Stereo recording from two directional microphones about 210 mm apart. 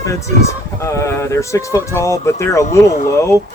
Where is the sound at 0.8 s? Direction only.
15° left (ahead or behind).